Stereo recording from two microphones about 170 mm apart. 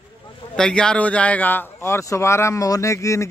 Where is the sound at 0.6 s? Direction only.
5° left (ahead or behind).